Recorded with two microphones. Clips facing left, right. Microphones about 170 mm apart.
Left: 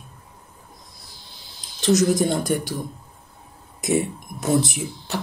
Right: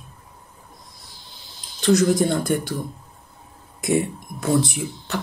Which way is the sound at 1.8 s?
20° left (ahead or behind).